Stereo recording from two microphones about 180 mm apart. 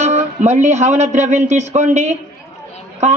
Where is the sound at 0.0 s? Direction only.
40° right (ahead or behind).